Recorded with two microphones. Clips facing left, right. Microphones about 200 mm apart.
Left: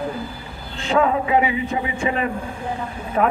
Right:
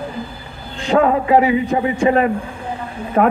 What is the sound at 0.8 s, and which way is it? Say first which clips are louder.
Speech: right 4 dB; 45° right (ahead or behind).